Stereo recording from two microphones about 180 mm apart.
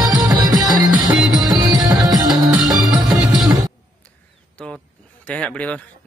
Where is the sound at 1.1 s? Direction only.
Centre (ahead or behind).